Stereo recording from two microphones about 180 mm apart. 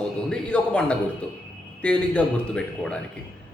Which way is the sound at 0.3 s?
5° left (ahead or behind).